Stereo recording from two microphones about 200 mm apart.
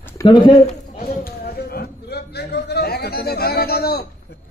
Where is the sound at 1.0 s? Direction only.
50° left (ahead or behind).